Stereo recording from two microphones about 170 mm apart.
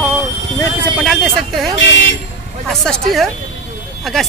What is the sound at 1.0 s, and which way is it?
Speech, centre (ahead or behind).